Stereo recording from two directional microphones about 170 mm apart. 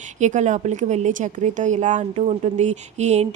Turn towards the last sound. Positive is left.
turn(degrees=-40)  # may be behind; listen again after turning